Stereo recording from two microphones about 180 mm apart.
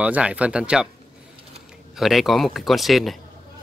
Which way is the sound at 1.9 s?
Centre (ahead or behind).